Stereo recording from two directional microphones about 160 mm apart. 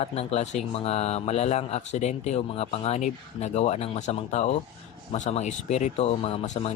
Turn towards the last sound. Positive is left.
turn(degrees=35)  # may be behind; listen again after turning